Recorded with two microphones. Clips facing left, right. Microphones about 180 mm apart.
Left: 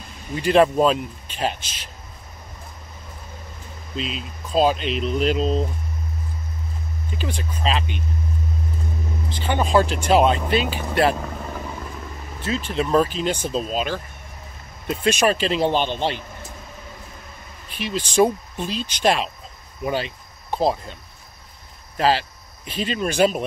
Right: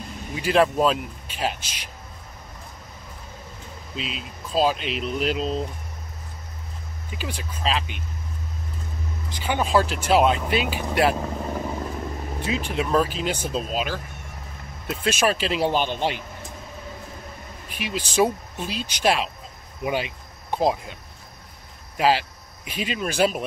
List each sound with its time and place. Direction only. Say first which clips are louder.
0.3 s speech: left 4 dB; 5° right (ahead or behind)
3.9 s speech: left 4 dB; 5° right (ahead or behind)
7.1 s speech: left 3 dB; 10° right (ahead or behind)
9.3 s speech: left 2 dB; 10° right (ahead or behind)
11.1 s vehicle: right 3 dB; 25° right (ahead or behind)
12.4 s speech: left 3 dB; 15° right (ahead or behind)
17.6 s speech: left 3 dB; 10° right (ahead or behind)
21.9 s speech: left 1 dB; 10° right (ahead or behind)